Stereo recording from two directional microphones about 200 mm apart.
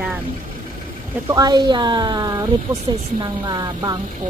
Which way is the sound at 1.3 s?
20° right (ahead or behind).